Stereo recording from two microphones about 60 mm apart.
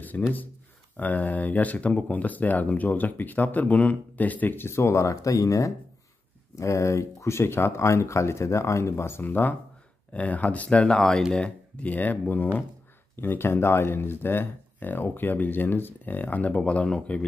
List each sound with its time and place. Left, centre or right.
0.0 s speech: left
4.6 s speech: left
5.1 s speech: left
10.8 s speech: centre
11.9 s speech: left